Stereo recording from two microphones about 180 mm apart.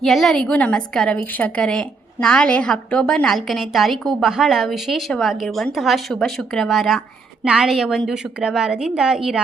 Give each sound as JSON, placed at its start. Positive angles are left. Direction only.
{"t": 0.0, "sound": "a woman's voice", "side_deg": 0}